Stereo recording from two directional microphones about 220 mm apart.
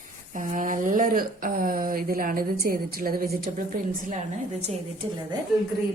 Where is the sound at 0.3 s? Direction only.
35° right (ahead or behind).